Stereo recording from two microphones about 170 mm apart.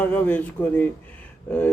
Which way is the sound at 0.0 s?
10° left (ahead or behind).